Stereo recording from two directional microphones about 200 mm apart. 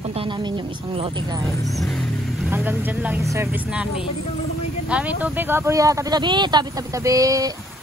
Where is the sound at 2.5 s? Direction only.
10° right (ahead or behind).